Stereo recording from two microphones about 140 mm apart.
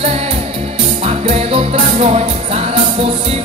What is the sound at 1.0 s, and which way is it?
Music, 50° right (ahead or behind).